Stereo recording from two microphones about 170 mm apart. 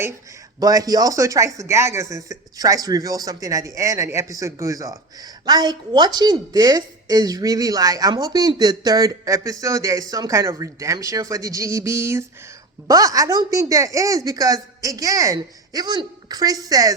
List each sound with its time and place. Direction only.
0.6 s speech: 20° right (ahead or behind)